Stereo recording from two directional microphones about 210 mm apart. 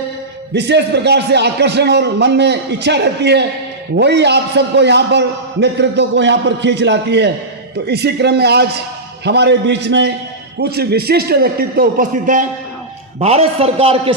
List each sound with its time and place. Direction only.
0.5 s a man's voice: 55° right (ahead or behind); by 14.2 s 25° right (ahead or behind)